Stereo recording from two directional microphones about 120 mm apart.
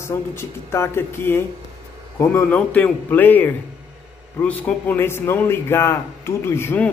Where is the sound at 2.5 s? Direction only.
10° left (ahead or behind).